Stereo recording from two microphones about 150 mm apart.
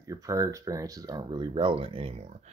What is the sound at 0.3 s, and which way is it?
Speech, 20° right (ahead or behind).